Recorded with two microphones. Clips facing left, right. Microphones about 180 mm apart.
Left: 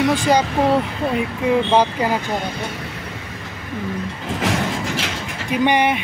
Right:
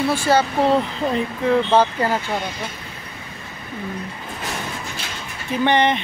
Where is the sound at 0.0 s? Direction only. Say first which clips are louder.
Left 1 dB; 15° left (ahead or behind).